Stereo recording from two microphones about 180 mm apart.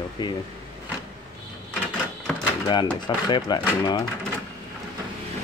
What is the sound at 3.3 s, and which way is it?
Speech, 25° left (ahead or behind).